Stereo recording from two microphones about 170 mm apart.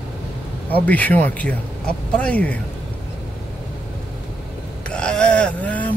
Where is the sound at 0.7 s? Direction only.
10° left (ahead or behind).